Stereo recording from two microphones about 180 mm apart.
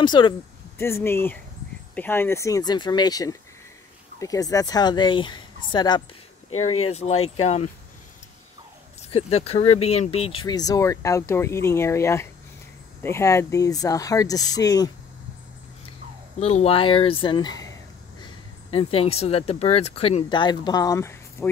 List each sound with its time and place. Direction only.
0.0 s speech: 25° left (ahead or behind)
0.7 s speech: 15° left (ahead or behind)
6.6 s speech: 35° left (ahead or behind)
9.1 s speech: 35° left (ahead or behind)
16.3 s speech: 35° left (ahead or behind); by 21.5 s 15° left (ahead or behind)